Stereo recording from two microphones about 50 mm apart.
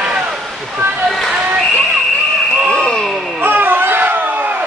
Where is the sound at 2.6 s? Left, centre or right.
Centre.